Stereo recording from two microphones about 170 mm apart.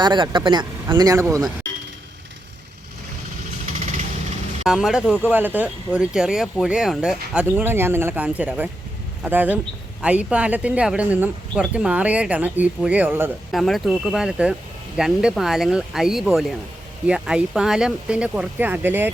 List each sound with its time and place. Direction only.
0.0 s speech: 25° right (ahead or behind)
4.6 s speech: 5° right (ahead or behind)
13.5 s speech: centre (ahead or behind)